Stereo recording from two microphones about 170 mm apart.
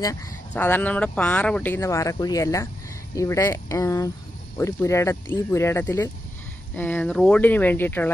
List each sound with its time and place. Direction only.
0.6 s speech: 10° left (ahead or behind)